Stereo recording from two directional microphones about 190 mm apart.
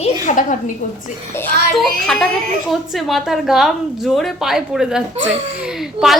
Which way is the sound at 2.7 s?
Centre (ahead or behind).